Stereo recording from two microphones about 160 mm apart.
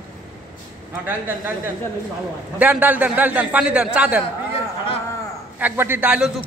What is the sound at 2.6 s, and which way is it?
A man's voice, 10° right (ahead or behind).